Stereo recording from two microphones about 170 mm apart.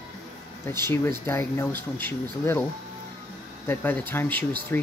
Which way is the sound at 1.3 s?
15° left (ahead or behind).